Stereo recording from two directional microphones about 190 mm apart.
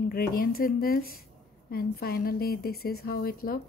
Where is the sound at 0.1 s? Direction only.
50° left (ahead or behind).